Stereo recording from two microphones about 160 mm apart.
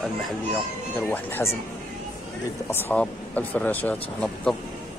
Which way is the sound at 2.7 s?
10° left (ahead or behind).